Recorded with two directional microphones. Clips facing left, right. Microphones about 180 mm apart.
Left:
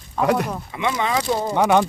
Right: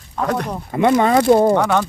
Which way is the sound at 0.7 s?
50° right (ahead or behind).